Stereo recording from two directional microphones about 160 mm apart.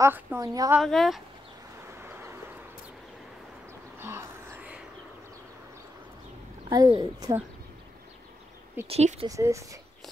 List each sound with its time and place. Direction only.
0.0 s a woman's voice: 15° right (ahead or behind)
0.7 s speech: centre (ahead or behind)
2.0 s vehicle: 15° right (ahead or behind)
4.0 s whispering: 15° right (ahead or behind)
6.7 s a woman's voice: 25° right (ahead or behind)
8.8 s speech: 40° right (ahead or behind)
9.3 s a woman's voice: 20° right (ahead or behind)